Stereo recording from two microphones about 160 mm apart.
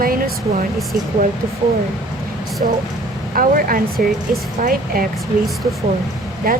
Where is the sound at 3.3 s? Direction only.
60° right (ahead or behind).